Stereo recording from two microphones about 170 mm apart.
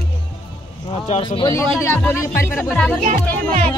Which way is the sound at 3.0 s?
50° right (ahead or behind).